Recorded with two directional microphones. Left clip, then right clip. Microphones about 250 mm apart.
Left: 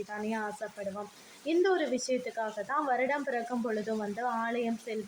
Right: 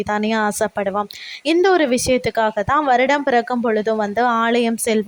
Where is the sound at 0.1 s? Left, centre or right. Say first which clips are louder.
Right 18 dB; right.